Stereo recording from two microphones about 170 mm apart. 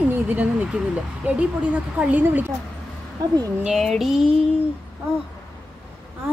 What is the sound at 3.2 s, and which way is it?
Speech, 20° right (ahead or behind).